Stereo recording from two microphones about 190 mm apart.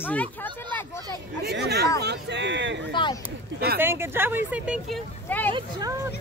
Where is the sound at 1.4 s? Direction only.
60° right (ahead or behind).